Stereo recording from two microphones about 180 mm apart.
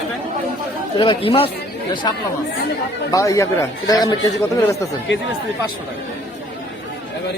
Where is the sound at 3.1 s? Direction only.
20° left (ahead or behind).